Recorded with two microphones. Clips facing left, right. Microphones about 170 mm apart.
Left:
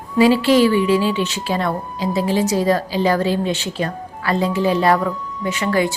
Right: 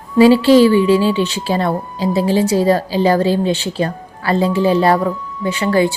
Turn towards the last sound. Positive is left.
turn(degrees=-30)  # may be behind; listen again after turning